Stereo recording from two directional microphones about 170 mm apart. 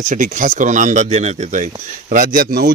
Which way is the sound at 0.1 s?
45° right (ahead or behind).